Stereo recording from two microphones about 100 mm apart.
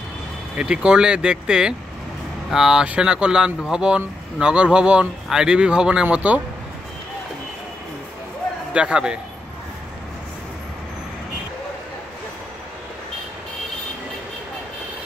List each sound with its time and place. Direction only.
0.6 s speech: 10° right (ahead or behind)
8.7 s speech: 10° right (ahead or behind)